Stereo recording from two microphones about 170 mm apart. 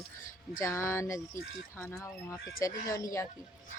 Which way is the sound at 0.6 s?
15° left (ahead or behind).